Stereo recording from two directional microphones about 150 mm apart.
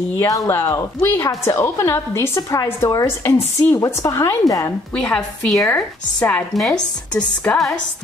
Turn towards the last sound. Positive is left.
turn(degrees=5)  # may be behind; listen again after turning